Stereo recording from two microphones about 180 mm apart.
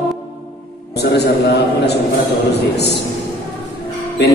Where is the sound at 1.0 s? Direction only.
65° left (ahead or behind).